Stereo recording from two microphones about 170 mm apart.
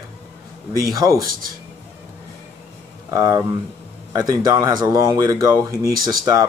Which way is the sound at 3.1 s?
20° right (ahead or behind).